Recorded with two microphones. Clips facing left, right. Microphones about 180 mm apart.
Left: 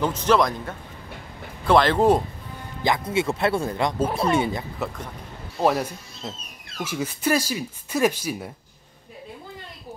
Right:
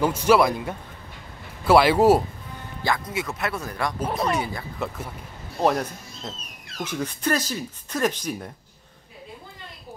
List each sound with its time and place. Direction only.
0.0 s speech: 10° right (ahead or behind)
2.8 s speech: 25° left (ahead or behind)
4.0 s speech: 5° left (ahead or behind)
4.3 s speech: 25° left (ahead or behind)
4.7 s speech: 5° right (ahead or behind)